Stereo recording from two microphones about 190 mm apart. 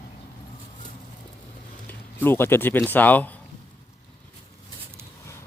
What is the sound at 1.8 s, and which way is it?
Speech, 10° left (ahead or behind).